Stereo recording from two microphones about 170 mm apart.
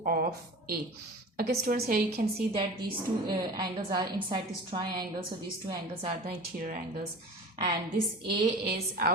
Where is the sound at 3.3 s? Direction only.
25° right (ahead or behind).